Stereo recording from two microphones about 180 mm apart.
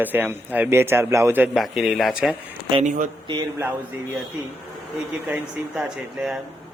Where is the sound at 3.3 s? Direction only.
20° right (ahead or behind).